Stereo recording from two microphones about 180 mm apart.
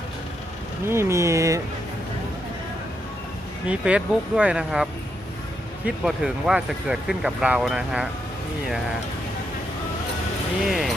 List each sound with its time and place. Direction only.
0.9 s speech: 15° right (ahead or behind)
3.7 s speech: 5° right (ahead or behind)
10.7 s speech: centre (ahead or behind)